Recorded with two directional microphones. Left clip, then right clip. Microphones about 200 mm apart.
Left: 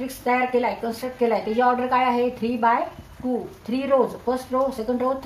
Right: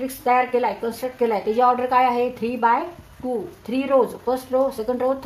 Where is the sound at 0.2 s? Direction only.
45° right (ahead or behind).